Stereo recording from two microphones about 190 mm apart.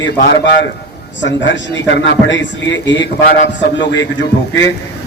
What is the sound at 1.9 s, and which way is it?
A man's voice, 75° left (ahead or behind).